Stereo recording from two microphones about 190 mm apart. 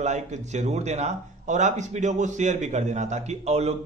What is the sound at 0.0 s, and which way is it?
Speech, 35° right (ahead or behind).